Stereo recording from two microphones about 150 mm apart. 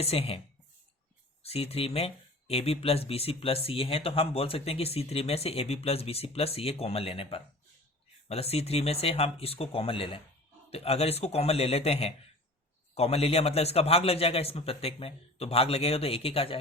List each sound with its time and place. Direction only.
0.0 s speech: 40° left (ahead or behind)
1.4 s speech: 40° left (ahead or behind)